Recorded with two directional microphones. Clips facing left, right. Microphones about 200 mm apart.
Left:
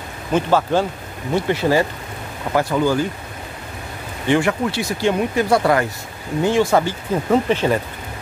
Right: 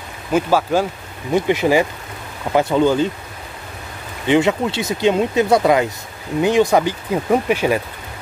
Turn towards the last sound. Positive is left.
turn(degrees=-10)  # may be behind; listen again after turning